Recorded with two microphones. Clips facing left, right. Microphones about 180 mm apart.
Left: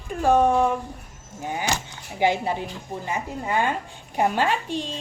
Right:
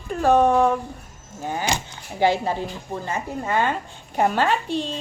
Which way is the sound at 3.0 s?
15° left (ahead or behind).